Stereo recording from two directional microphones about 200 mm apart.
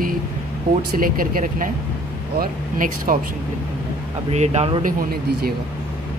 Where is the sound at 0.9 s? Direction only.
45° right (ahead or behind).